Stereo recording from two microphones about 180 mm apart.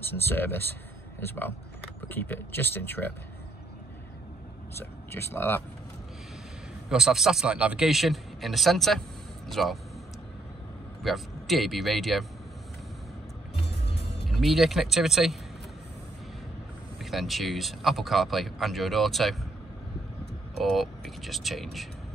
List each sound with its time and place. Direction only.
0.3 s speech: 10° left (ahead or behind)
4.7 s speech: 15° left (ahead or behind)
6.9 s speech: centre (ahead or behind)
11.0 s speech: centre (ahead or behind)
13.7 s music: 70° left (ahead or behind)
14.2 s speech: centre (ahead or behind)
17.0 s speech: centre (ahead or behind)
20.6 s speech: centre (ahead or behind)